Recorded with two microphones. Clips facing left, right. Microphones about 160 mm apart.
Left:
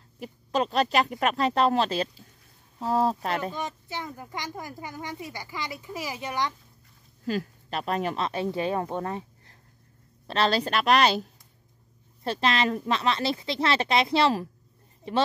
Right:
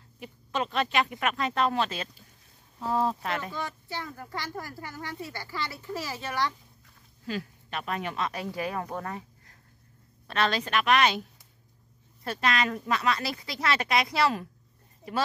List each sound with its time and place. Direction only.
0.2 s speech: 35° left (ahead or behind)
3.5 s speech: 20° left (ahead or behind)
7.2 s a woman's voice: 40° left (ahead or behind)